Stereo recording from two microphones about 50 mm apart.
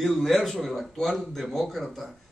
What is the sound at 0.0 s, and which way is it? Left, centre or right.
A man's voice, centre.